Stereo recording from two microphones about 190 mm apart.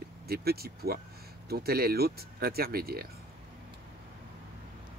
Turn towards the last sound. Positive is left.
turn(degrees=-50)  # may be behind; listen again after turning